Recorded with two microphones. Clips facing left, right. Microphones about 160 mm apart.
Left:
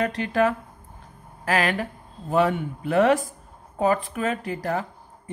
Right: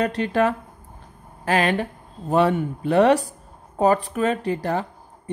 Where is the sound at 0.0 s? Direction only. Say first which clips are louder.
Right 2 dB; 35° right (ahead or behind).